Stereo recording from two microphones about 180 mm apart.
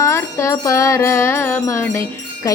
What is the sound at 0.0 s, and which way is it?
Music, 15° left (ahead or behind).